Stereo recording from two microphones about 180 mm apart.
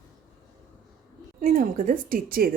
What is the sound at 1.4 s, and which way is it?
Speech, 45° right (ahead or behind).